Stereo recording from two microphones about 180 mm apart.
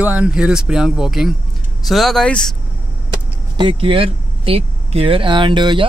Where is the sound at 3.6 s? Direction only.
30° right (ahead or behind).